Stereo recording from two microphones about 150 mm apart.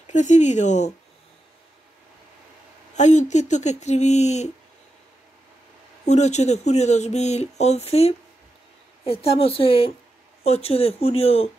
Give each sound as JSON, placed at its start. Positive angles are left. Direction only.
{"t": 0.0, "sound": "speech", "side_deg": 50}
{"t": 3.0, "sound": "speech", "side_deg": 50}
{"t": 6.0, "sound": "speech", "side_deg": 50}